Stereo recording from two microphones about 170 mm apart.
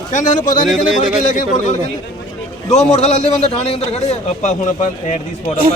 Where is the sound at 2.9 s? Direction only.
40° left (ahead or behind).